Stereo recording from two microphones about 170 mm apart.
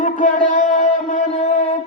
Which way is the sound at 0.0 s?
50° left (ahead or behind).